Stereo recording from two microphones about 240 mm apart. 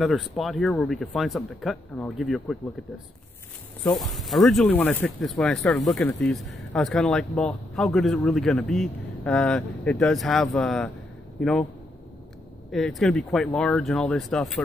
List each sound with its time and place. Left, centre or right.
0.0 s speech: centre
4.1 s speech: centre
12.7 s speech: centre